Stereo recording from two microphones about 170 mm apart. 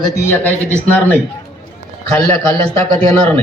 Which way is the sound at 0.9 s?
10° left (ahead or behind).